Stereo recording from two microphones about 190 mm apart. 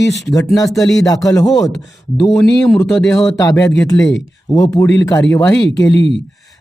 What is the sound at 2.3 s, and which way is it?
Speech, 5° left (ahead or behind).